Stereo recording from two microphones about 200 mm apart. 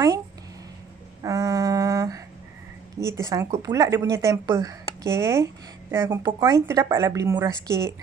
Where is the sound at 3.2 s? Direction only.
15° right (ahead or behind).